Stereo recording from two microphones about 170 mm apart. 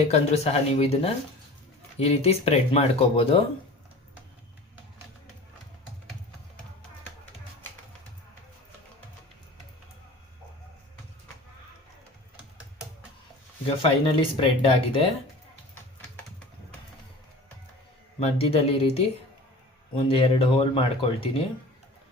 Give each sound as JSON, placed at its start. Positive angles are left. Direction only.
{"t": 0.1, "sound": "speech", "side_deg": 40}
{"t": 13.7, "sound": "speech", "side_deg": 35}
{"t": 18.2, "sound": "speech", "side_deg": 35}